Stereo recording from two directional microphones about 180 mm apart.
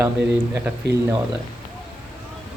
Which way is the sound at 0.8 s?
70° right (ahead or behind).